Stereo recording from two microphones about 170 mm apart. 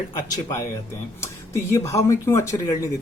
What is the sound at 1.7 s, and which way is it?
Speech, 15° left (ahead or behind).